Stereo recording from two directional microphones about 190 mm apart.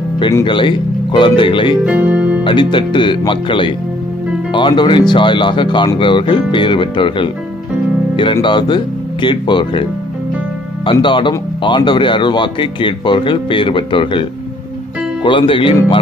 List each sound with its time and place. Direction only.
0.4 s speech: 25° left (ahead or behind)
1.9 s speech: 10° right (ahead or behind)
2.4 s speech: 25° left (ahead or behind)
10.9 s speech: 25° left (ahead or behind)
15.2 s speech: 25° left (ahead or behind)